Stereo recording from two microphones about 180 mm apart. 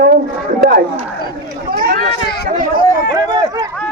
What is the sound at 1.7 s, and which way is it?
Run, 55° right (ahead or behind).